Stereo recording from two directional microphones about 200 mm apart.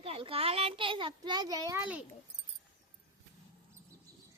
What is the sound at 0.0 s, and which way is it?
A child's voice, 30° right (ahead or behind).